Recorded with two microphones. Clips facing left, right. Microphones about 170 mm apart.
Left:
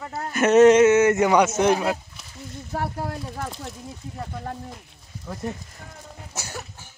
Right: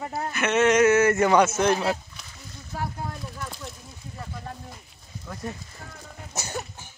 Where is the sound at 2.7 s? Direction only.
60° left (ahead or behind).